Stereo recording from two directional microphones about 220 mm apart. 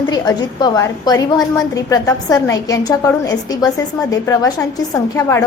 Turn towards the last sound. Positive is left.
turn(degrees=15)  # may be behind; listen again after turning